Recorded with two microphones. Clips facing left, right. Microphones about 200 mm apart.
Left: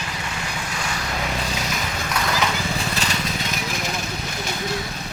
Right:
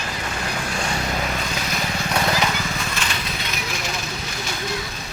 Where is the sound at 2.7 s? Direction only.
35° left (ahead or behind).